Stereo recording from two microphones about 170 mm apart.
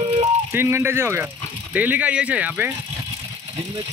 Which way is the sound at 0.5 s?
15° right (ahead or behind).